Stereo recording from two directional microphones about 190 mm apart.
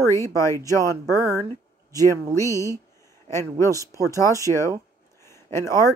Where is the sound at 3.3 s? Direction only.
15° left (ahead or behind).